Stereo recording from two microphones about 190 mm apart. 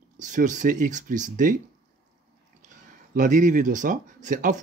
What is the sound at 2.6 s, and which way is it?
Speech, 45° right (ahead or behind).